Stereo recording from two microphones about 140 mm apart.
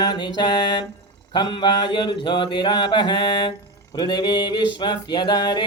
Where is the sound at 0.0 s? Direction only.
30° left (ahead or behind).